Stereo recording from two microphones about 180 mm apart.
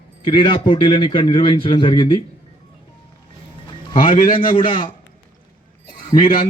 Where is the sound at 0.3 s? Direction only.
25° left (ahead or behind).